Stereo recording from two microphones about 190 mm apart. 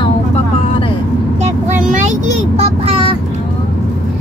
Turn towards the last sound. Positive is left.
turn(degrees=-30)  # may be behind; listen again after turning